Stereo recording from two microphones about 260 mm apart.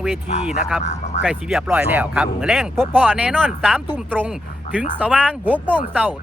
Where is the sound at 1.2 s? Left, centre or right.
Centre.